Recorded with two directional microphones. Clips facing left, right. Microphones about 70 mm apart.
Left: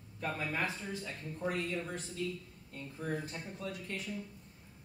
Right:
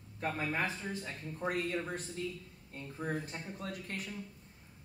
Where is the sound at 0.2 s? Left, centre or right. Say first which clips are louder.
Right 1 dB; right.